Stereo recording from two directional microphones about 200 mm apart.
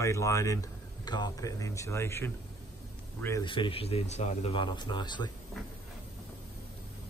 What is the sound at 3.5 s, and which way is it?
A man's voice, 25° left (ahead or behind).